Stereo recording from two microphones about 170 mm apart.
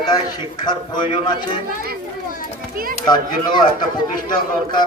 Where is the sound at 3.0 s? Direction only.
25° left (ahead or behind).